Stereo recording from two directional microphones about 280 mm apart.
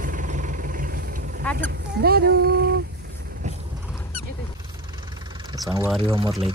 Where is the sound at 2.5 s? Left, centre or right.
Right.